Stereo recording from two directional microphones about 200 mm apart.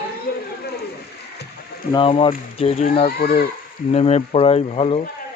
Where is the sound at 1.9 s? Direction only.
25° left (ahead or behind).